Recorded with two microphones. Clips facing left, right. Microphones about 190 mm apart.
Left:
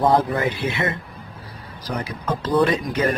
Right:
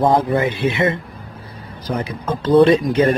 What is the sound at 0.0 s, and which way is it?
Speech, 20° right (ahead or behind).